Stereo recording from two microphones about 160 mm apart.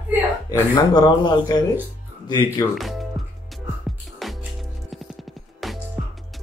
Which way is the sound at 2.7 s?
Centre (ahead or behind).